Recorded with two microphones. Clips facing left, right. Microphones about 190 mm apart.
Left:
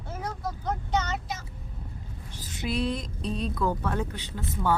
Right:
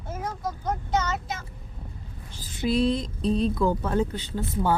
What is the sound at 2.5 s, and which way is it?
Speech, 30° right (ahead or behind).